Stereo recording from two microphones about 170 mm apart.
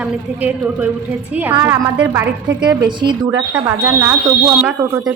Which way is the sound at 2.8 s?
25° right (ahead or behind).